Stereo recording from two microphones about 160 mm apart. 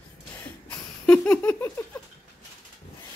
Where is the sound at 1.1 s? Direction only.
10° left (ahead or behind).